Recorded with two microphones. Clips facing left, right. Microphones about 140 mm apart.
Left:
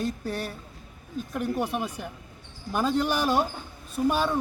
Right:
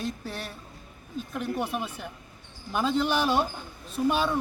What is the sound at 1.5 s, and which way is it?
Speech, 10° left (ahead or behind).